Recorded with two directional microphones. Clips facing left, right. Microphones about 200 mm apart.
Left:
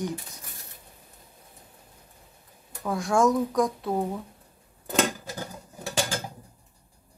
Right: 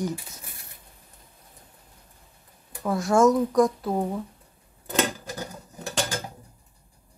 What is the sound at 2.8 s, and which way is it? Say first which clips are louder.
Speech: right 3 dB; centre (ahead or behind).